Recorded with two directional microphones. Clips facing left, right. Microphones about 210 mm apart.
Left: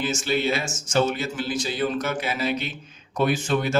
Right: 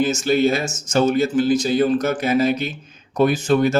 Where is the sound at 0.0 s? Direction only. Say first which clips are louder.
Right 7 dB; 45° right (ahead or behind).